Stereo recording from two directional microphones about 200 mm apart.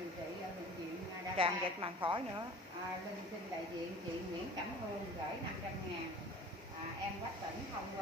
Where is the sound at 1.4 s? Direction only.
25° right (ahead or behind).